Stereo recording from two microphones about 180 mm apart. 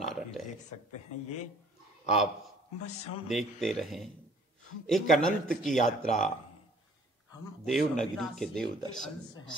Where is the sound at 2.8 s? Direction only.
35° left (ahead or behind).